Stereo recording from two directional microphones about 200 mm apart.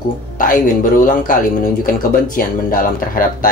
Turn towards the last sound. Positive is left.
turn(degrees=45)  # may be behind; listen again after turning